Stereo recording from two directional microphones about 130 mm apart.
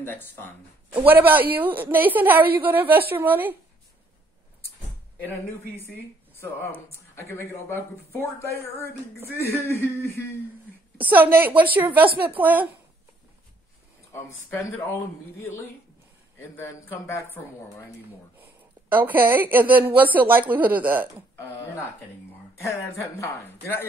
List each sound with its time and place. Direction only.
0.0 s speech: 15° left (ahead or behind)
1.0 s a woman's voice: 15° right (ahead or behind)
7.2 s speech: 20° left (ahead or behind)
11.0 s a woman's voice: 15° right (ahead or behind)
16.3 s speech: 20° left (ahead or behind)
18.6 s a woman's voice: 15° right (ahead or behind)
22.6 s speech: 20° left (ahead or behind)